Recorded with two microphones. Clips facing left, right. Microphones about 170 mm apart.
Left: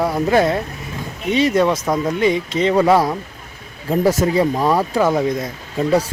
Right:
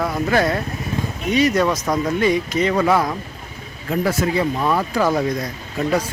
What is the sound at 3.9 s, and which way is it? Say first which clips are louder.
Speech: left 4 dB; 40° left (ahead or behind).